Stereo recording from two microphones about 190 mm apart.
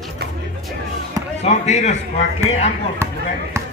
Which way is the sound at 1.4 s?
35° left (ahead or behind).